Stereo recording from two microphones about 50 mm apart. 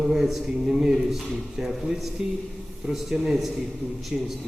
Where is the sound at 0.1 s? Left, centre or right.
Centre.